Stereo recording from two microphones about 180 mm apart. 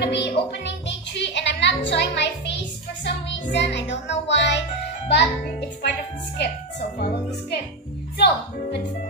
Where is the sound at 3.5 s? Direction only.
80° left.